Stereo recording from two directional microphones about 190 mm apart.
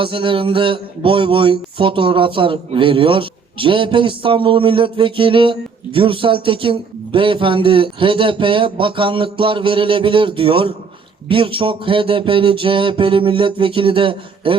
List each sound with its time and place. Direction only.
0.0 s speech: 25° right (ahead or behind)